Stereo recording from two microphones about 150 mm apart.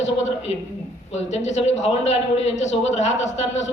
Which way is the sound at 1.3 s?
50° left (ahead or behind).